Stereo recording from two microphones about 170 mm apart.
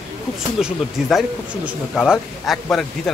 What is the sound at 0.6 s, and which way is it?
A man's voice, 5° right (ahead or behind).